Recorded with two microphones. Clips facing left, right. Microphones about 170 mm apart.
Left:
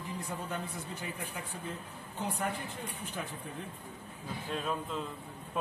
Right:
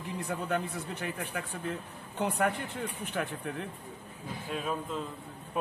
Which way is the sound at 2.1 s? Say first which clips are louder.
Right 6 dB; 65° right (ahead or behind).